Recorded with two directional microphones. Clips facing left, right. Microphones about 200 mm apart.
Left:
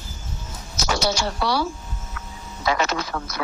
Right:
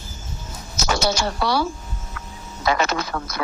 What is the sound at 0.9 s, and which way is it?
Speech, 50° right (ahead or behind).